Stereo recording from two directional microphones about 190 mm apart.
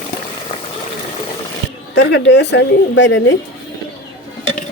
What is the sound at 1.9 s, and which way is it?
A woman's voice, 70° left (ahead or behind).